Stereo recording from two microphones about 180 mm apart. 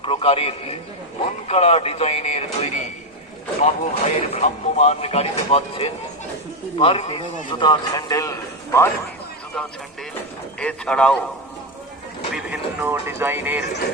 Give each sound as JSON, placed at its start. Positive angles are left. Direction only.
{"t": 0.0, "sound": "a man's voice", "side_deg": 30}
{"t": 10.6, "sound": "speech", "side_deg": 5}
{"t": 12.3, "sound": "speech", "side_deg": -10}